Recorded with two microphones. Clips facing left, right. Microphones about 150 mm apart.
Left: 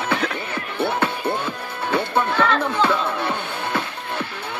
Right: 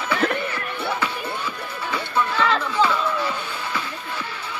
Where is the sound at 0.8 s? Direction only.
55° left (ahead or behind).